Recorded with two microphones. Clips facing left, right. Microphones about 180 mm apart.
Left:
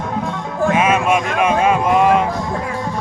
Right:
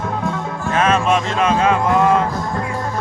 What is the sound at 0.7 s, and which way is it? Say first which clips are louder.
Music: even; 10° left (ahead or behind).